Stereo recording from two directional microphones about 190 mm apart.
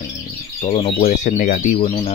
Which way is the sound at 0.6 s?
25° left (ahead or behind).